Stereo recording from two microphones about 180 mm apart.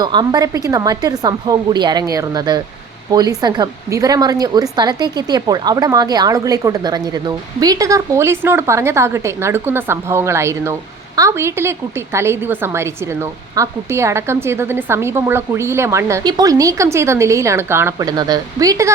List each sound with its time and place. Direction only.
0.0 s a woman's voice: 25° right (ahead or behind)